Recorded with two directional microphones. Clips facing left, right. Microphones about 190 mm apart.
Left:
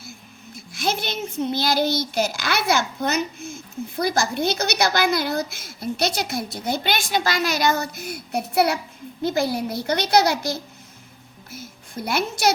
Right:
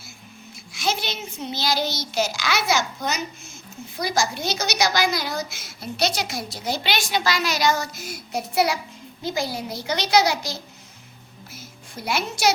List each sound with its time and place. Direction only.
0.5 s a child's voice: 55° left (ahead or behind)
11.5 s music: 55° left (ahead or behind)